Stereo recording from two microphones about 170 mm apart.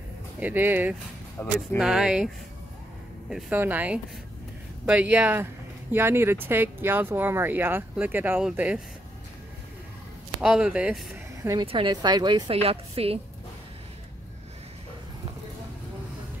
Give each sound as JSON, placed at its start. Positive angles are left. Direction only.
{"t": 0.4, "sound": "speech", "side_deg": -10}
{"t": 1.4, "sound": "speech", "side_deg": 15}
{"t": 1.8, "sound": "speech", "side_deg": -5}
{"t": 10.4, "sound": "speech", "side_deg": -5}
{"t": 11.4, "sound": "a woman's voice", "side_deg": -30}